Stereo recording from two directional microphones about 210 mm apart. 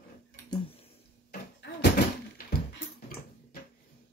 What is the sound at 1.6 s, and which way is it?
Door, 55° left (ahead or behind).